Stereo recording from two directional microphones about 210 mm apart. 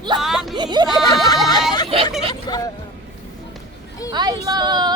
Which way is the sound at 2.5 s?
20° left (ahead or behind).